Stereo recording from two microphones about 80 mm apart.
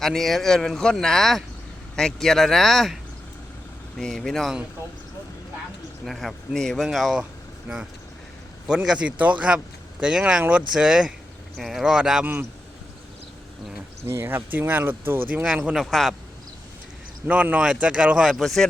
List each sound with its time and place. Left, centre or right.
0.0 s speech: centre
6.1 s speech: centre
8.6 s speech: centre
12.2 s speech: right
14.1 s speech: right
15.7 s speech: centre
17.2 s speech: centre